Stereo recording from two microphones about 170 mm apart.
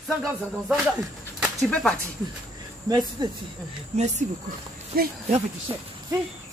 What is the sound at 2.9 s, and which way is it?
Speech, 25° right (ahead or behind).